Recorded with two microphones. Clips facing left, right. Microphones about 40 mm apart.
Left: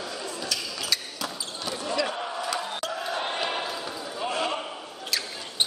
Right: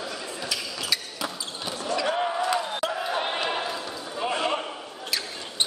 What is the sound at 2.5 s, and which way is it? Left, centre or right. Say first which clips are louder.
Crowd: right 4 dB; centre.